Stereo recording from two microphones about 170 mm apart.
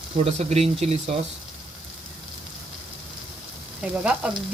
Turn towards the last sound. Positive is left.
turn(degrees=-5)  # may be behind; listen again after turning